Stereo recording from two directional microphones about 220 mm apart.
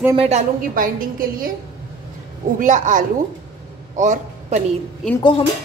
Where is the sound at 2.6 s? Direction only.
35° right (ahead or behind).